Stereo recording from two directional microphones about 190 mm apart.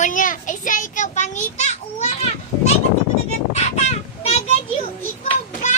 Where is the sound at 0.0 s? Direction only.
45° left (ahead or behind).